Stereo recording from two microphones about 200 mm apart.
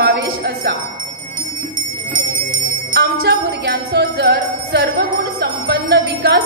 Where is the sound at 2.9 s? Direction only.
55° right (ahead or behind).